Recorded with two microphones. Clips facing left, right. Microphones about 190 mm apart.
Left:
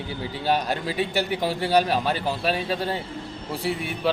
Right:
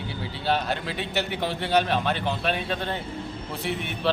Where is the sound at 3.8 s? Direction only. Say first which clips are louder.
Right 1 dB; 5° left (ahead or behind).